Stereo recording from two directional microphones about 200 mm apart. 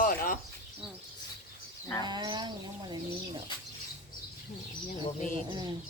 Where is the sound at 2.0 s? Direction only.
20° right (ahead or behind).